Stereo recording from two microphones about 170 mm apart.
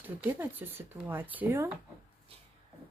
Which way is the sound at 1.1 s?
10° right (ahead or behind).